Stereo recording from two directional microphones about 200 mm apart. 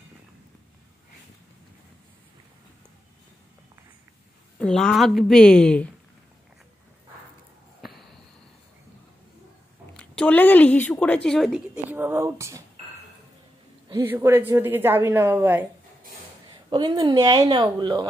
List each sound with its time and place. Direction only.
4.6 s a woman's voice: 5° left (ahead or behind)
7.8 s a sound: centre (ahead or behind)
9.9 s a woman's voice: 5° left (ahead or behind); by 12.6 s 15° right (ahead or behind)
13.8 s a woman's voice: 15° right (ahead or behind)
16.7 s a woman's voice: 20° right (ahead or behind)